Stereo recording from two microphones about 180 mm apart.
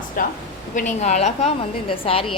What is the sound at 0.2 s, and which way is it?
A woman's voice, 50° left (ahead or behind).